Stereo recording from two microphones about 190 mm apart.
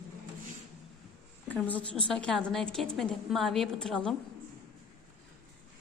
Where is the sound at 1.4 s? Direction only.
10° left (ahead or behind).